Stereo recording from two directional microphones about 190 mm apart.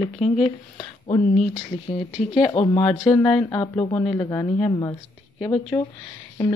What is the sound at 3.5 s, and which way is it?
A woman's voice, 20° left (ahead or behind).